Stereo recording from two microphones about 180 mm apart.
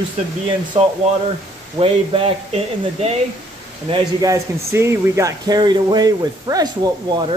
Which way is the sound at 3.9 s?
20° right (ahead or behind).